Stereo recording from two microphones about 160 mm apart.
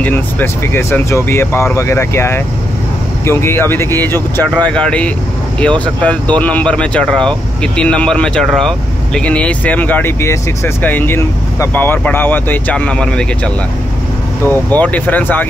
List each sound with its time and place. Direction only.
0.0 s speech: 10° left (ahead or behind)
14.4 s speech: 10° left (ahead or behind)